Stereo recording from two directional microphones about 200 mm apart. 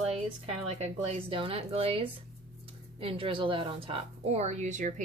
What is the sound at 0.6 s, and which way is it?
A woman's voice, 30° right (ahead or behind).